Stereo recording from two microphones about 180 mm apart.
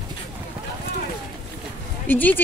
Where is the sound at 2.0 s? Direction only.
10° left (ahead or behind).